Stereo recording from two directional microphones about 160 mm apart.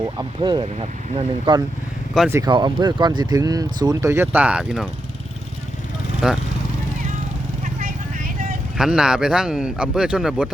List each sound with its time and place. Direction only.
0.0 s speech: 25° right (ahead or behind); by 4.9 s 5° right (ahead or behind)
6.2 s speech: 5° right (ahead or behind)
7.8 s vehicle: 60° right (ahead or behind)
8.8 s speech: 5° right (ahead or behind)